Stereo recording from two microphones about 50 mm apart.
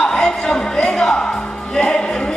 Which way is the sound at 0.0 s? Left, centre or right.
Centre.